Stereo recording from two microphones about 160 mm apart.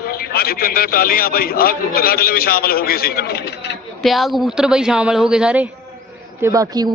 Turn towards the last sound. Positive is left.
turn(degrees=-25)  # may be behind; listen again after turning